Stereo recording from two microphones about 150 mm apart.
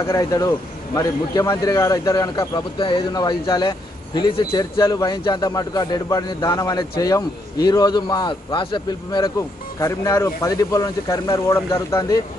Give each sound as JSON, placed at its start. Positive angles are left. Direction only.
{"t": 0.0, "sound": "a man's voice", "side_deg": 25}
{"t": 9.8, "sound": "a man's voice", "side_deg": 20}